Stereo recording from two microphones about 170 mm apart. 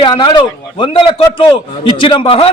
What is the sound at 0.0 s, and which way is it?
A man's voice, 25° left (ahead or behind).